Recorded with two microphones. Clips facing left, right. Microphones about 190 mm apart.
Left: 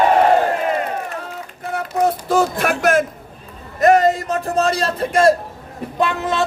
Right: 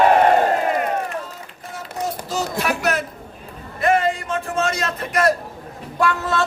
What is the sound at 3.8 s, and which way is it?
A man's voice, 40° left (ahead or behind).